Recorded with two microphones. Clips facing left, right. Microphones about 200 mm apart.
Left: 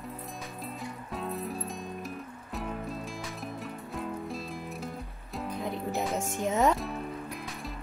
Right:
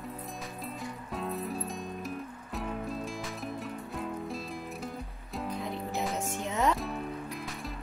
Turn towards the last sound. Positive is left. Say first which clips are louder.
# even
turn(degrees=0)  # may be behind; listen again after turning